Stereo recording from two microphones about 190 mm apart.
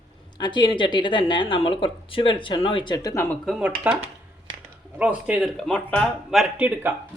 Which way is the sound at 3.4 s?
5° right (ahead or behind).